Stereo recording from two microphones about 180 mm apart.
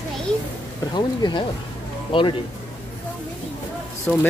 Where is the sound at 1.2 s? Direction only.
25° left (ahead or behind).